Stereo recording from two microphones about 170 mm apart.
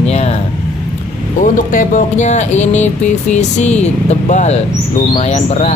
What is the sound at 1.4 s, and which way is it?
Speech, 50° left (ahead or behind).